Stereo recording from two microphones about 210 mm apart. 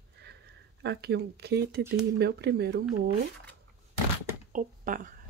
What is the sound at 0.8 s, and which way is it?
Speech, 55° right (ahead or behind).